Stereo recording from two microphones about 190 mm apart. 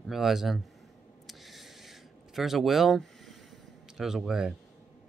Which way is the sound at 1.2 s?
Centre (ahead or behind).